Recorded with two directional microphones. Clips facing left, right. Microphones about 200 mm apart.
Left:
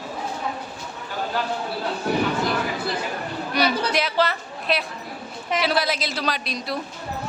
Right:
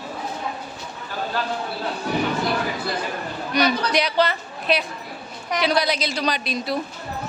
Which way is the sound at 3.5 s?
5° left (ahead or behind).